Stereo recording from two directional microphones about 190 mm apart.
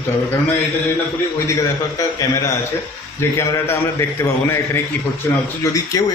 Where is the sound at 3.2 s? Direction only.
15° left (ahead or behind).